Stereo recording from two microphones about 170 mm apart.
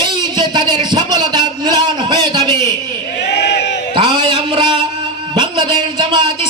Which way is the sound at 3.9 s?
30° right (ahead or behind).